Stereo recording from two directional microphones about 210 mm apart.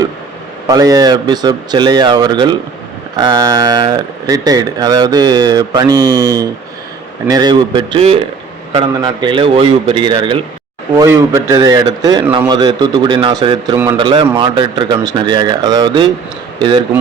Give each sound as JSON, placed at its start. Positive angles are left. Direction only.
{"t": 0.7, "sound": "speech", "side_deg": -15}